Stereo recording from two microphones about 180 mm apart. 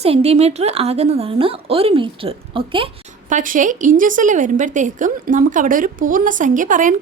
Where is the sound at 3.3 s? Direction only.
45° right (ahead or behind).